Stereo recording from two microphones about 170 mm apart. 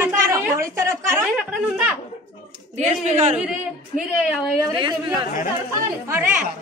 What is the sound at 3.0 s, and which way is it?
Speech, 45° right (ahead or behind).